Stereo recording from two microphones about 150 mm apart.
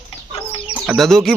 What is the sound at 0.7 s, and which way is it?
Chicken, centre (ahead or behind).